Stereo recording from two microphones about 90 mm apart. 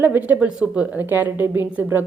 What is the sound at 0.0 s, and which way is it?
A woman's voice, 20° right (ahead or behind).